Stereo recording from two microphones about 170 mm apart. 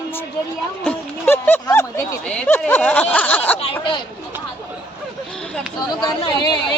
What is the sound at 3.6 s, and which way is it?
Speech, 30° left (ahead or behind).